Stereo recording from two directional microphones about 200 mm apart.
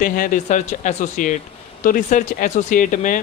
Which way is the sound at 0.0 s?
40° left (ahead or behind).